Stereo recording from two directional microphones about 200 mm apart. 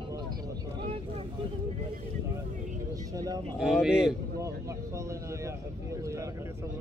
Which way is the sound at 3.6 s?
Centre (ahead or behind).